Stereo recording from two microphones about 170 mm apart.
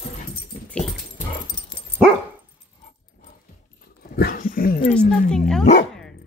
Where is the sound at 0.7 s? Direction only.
5° left (ahead or behind).